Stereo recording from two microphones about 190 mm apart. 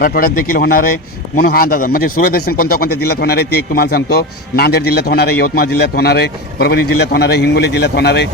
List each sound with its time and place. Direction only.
0.0 s a man's voice: 50° left (ahead or behind)